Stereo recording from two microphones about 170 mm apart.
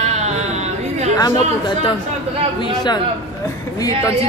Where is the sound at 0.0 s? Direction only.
40° right (ahead or behind).